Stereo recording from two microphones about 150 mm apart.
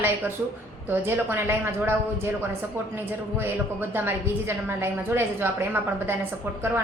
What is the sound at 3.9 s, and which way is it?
A woman's voice, 15° right (ahead or behind).